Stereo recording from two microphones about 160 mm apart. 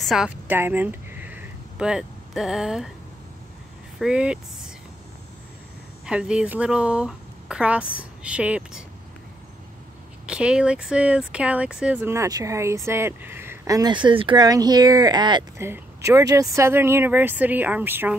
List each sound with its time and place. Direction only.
0.0 s a woman's voice: centre (ahead or behind)
0.5 s a sound: 10° right (ahead or behind)
4.0 s speech: 5° right (ahead or behind)
6.0 s speech: 5° right (ahead or behind)
10.2 s speech: 5° right (ahead or behind); by 15.6 s 25° right (ahead or behind)
15.6 s speech: 15° right (ahead or behind)